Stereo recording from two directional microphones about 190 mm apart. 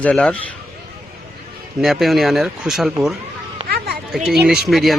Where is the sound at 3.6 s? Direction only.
55° right (ahead or behind).